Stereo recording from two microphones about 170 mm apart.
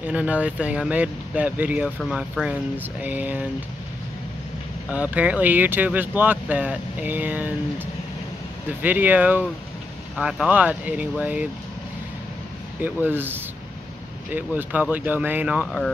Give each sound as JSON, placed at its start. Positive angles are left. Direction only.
{"t": 0.0, "sound": "speech", "side_deg": -5}
{"t": 4.9, "sound": "speech", "side_deg": -10}
{"t": 12.8, "sound": "speech", "side_deg": -10}